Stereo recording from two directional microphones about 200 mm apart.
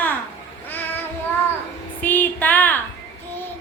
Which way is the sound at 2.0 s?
10° left (ahead or behind).